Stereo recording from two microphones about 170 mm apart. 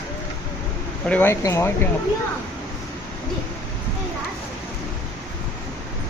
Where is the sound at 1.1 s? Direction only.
10° left (ahead or behind).